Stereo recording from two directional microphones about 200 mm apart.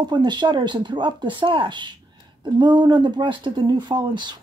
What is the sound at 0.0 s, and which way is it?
Speech, 20° right (ahead or behind).